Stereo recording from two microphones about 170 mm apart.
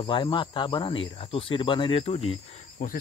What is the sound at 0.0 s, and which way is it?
Speech, 30° left (ahead or behind).